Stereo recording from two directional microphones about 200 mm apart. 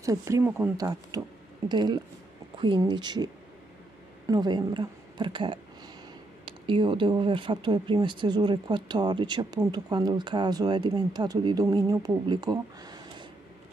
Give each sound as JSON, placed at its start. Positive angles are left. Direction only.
{"t": 0.0, "sound": "speech", "side_deg": -15}
{"t": 4.3, "sound": "speech", "side_deg": -20}